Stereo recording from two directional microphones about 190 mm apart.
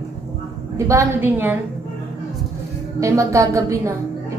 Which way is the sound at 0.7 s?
15° right (ahead or behind).